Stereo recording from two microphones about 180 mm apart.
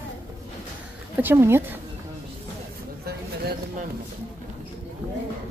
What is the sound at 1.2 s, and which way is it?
Speech, 15° right (ahead or behind).